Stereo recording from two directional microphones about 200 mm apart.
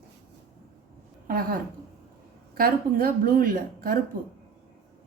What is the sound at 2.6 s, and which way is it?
A woman's voice, 45° right (ahead or behind).